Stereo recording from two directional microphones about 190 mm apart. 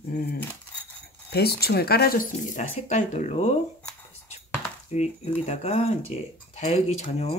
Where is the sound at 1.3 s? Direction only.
55° left (ahead or behind); by 3.5 s 35° left (ahead or behind).